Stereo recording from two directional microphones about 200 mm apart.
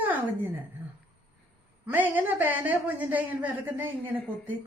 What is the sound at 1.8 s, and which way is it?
A woman's voice, 10° right (ahead or behind).